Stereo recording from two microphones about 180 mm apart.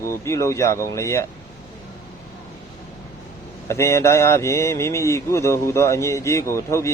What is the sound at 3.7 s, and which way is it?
Speech, 15° left (ahead or behind).